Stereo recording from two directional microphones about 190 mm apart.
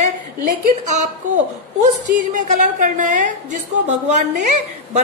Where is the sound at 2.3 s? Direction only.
40° right (ahead or behind).